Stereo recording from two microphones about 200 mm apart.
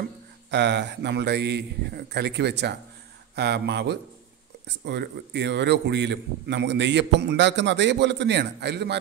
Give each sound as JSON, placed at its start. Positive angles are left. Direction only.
{"t": 0.5, "sound": "a man's voice", "side_deg": -60}